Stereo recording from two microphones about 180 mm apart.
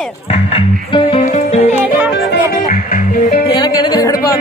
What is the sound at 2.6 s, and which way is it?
Music, 45° left (ahead or behind).